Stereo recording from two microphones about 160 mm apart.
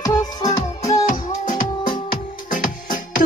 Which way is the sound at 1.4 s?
50° left (ahead or behind).